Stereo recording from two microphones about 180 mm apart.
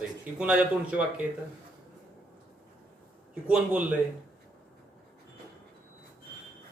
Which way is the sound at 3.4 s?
5° right (ahead or behind).